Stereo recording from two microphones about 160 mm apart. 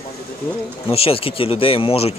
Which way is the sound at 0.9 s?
35° left (ahead or behind).